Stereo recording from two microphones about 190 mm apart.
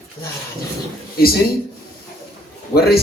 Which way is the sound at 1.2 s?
50° left (ahead or behind).